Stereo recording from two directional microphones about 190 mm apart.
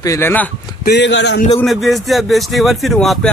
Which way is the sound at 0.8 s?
65° left (ahead or behind).